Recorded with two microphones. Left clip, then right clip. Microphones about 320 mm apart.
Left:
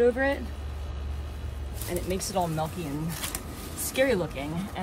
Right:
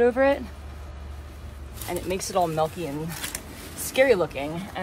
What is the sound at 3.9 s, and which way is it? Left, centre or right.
Speech, centre.